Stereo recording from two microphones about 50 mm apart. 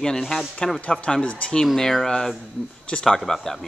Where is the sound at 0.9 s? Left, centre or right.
Centre.